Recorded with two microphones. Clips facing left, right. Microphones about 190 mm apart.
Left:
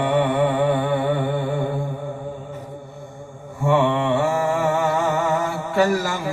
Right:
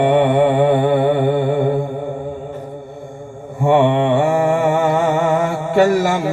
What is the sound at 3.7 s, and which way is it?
Mantra, 55° right (ahead or behind).